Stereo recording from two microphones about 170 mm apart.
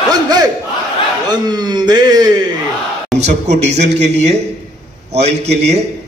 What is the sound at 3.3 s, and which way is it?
A man's voice, 40° right (ahead or behind).